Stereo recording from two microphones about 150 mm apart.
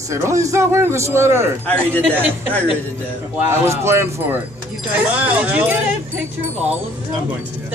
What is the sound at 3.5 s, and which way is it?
Speech, 15° right (ahead or behind).